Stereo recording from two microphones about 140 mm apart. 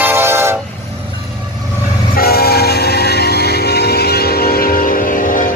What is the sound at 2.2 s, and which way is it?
Train, 90° left.